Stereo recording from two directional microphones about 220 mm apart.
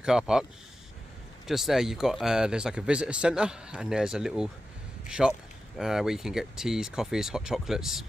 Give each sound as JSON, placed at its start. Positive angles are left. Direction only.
{"t": 0.0, "sound": "speech", "side_deg": -5}
{"t": 1.5, "sound": "speech", "side_deg": 0}